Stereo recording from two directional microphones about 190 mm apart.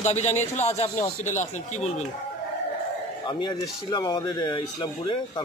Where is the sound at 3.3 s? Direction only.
25° left (ahead or behind).